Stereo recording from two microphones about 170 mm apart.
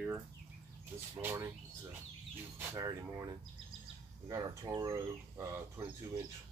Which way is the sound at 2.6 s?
15° right (ahead or behind).